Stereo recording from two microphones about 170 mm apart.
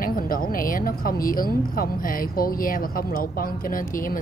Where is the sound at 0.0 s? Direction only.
55° left (ahead or behind).